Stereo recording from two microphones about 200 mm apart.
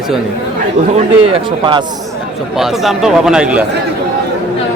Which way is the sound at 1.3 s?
25° right (ahead or behind).